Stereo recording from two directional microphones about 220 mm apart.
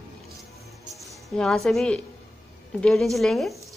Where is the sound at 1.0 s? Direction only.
Centre (ahead or behind).